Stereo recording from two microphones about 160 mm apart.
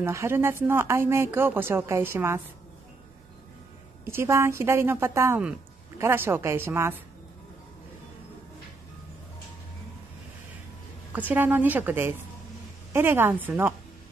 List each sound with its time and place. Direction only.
0.0 s speech: 15° right (ahead or behind)
4.0 s speech: 15° right (ahead or behind)
11.1 s speech: 10° right (ahead or behind)